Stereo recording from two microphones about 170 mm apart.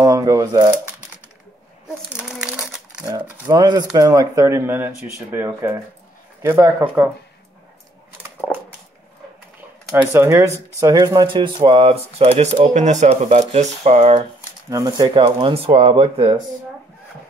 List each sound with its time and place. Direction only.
0.0 s speech: 20° right (ahead or behind)
2.1 s crumpling: 5° right (ahead or behind)
3.1 s speech: 20° right (ahead or behind)
9.9 s speech: 15° right (ahead or behind); by 14.2 s 40° right (ahead or behind)
14.7 s speech: 20° right (ahead or behind)